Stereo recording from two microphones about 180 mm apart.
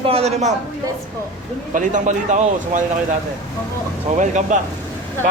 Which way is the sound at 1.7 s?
45° right (ahead or behind).